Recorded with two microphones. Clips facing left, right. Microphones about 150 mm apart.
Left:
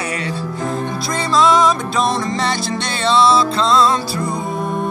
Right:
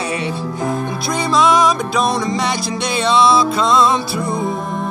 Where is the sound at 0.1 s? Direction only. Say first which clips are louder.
Right 2 dB; 20° right (ahead or behind).